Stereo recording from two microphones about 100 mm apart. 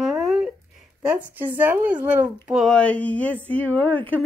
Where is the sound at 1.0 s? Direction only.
15° right (ahead or behind).